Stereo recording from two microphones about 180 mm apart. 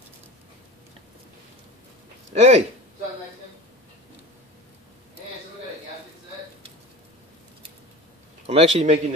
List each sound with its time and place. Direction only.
2.3 s speech: 40° right (ahead or behind)
8.5 s speech: 35° right (ahead or behind)